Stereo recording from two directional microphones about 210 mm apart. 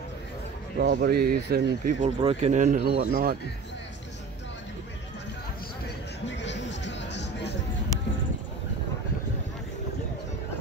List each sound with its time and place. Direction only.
0.7 s speech: 50° right (ahead or behind)
2.0 s speech: 25° right (ahead or behind); by 3.3 s 45° right (ahead or behind)
6.2 s music: 55° left (ahead or behind)